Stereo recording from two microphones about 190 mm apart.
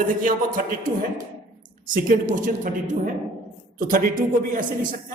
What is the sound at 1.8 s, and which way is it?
A woman's voice, 45° right (ahead or behind).